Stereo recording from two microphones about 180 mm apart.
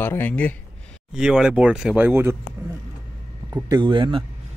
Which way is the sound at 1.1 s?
5° right (ahead or behind).